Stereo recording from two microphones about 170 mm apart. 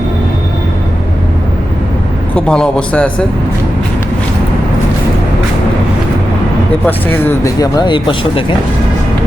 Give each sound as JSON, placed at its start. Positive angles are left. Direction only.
{"t": 2.3, "sound": "a man's voice", "side_deg": 5}
{"t": 6.8, "sound": "speech", "side_deg": 10}